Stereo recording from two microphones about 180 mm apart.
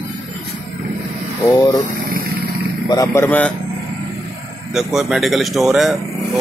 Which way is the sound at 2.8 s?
20° left (ahead or behind).